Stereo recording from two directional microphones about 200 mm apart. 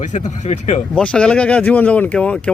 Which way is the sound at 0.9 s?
5° left (ahead or behind).